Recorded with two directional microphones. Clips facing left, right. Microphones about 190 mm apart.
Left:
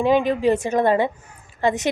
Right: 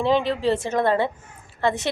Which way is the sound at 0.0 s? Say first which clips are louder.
Left 3 dB; 15° left (ahead or behind).